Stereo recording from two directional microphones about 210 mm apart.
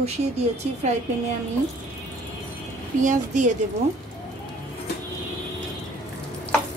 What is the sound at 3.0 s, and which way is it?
Speech, 35° right (ahead or behind).